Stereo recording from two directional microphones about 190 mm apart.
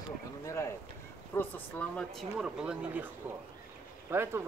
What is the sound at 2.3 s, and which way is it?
Speech, 5° right (ahead or behind).